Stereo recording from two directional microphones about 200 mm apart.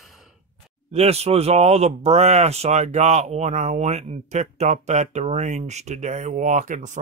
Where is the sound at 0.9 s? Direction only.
30° right (ahead or behind).